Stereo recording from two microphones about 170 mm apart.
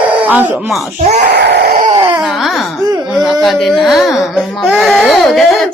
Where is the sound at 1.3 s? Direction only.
90° right.